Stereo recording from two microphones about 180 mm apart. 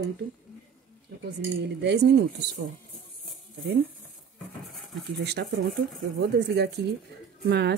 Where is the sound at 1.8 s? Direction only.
70° right (ahead or behind).